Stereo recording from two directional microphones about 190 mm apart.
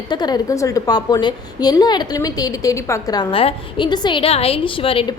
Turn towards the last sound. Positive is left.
turn(degrees=30)  # may be behind; listen again after turning